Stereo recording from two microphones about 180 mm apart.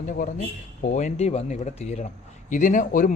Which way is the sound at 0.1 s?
45° left (ahead or behind).